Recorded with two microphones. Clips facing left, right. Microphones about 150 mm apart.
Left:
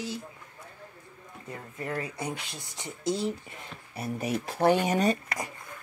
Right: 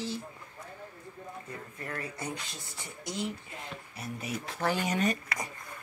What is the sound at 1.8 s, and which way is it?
Speech, 15° left (ahead or behind).